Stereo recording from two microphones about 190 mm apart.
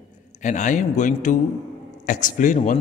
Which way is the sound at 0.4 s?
40° left (ahead or behind).